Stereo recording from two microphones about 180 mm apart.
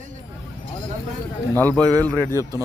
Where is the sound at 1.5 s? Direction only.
10° left (ahead or behind).